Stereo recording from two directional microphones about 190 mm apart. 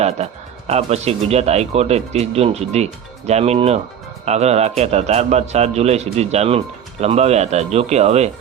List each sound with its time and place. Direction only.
0.7 s speech: 35° right (ahead or behind)